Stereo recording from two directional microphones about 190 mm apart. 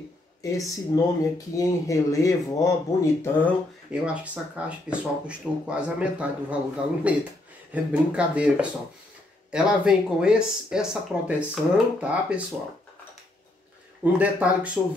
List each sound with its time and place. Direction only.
0.4 s speech: 15° left (ahead or behind)
3.9 s speech: 5° right (ahead or behind)
14.1 s speech: 5° right (ahead or behind)